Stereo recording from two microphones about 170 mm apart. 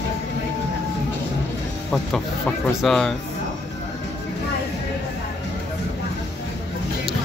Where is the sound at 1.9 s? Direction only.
Centre (ahead or behind).